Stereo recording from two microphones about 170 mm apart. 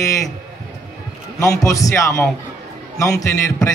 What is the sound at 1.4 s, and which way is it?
A man's voice, 20° left (ahead or behind).